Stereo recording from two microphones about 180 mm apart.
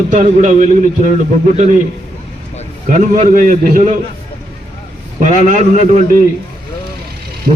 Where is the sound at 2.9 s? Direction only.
45° right (ahead or behind).